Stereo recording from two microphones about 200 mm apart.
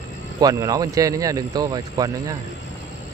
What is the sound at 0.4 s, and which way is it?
Speech, 20° right (ahead or behind).